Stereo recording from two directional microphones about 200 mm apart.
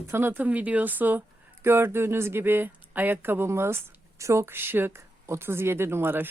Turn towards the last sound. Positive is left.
turn(degrees=-10)  # may be behind; listen again after turning